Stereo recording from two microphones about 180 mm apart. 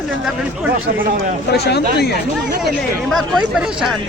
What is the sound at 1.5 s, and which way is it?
Speech, 65° left (ahead or behind).